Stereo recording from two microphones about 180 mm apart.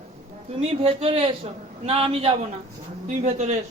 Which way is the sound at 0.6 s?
35° right (ahead or behind).